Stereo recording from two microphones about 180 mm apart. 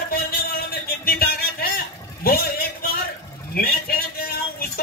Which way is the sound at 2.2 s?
55° left (ahead or behind).